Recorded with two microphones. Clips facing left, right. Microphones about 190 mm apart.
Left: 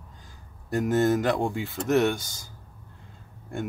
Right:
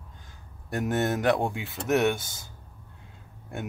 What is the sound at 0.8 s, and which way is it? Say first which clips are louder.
Speech: left 2 dB; centre (ahead or behind).